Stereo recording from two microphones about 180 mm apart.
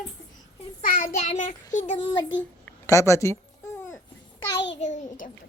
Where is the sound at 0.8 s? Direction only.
50° left (ahead or behind).